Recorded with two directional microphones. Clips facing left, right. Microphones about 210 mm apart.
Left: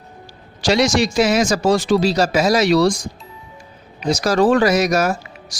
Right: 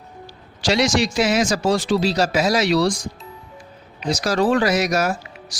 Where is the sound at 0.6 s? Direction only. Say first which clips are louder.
Left 3 dB; 45° left (ahead or behind).